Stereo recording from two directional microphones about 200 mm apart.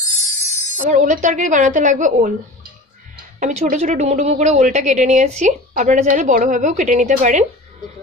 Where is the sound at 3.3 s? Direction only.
40° right (ahead or behind).